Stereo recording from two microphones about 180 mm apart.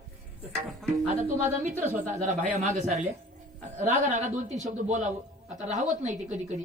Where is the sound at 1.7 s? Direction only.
10° right (ahead or behind).